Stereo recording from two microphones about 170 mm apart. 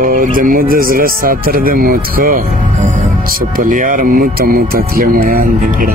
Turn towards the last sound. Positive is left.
turn(degrees=-55)  # may be behind; listen again after turning